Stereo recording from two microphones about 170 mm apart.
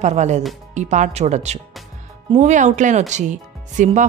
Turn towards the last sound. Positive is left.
turn(degrees=-45)  # may be behind; listen again after turning